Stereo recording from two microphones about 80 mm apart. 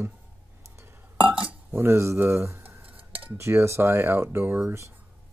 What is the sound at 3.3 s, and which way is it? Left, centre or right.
Speech, right.